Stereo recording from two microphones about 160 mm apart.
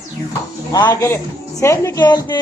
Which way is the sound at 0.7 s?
25° left (ahead or behind).